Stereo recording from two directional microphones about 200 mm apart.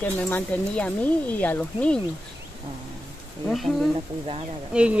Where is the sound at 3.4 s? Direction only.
Centre (ahead or behind).